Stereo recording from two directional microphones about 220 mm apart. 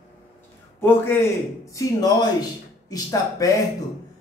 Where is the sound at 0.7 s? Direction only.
10° left (ahead or behind).